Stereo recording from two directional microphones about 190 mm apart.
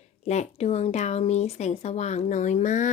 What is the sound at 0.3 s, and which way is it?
A woman's voice, 35° left (ahead or behind).